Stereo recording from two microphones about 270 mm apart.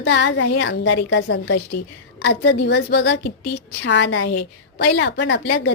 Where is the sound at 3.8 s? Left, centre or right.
Left.